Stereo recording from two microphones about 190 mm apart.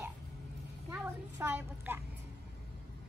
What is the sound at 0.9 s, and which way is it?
A woman's voice, 10° right (ahead or behind).